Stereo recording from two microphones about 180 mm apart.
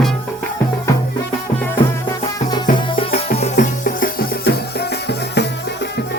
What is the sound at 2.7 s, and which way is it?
Music, 30° left (ahead or behind).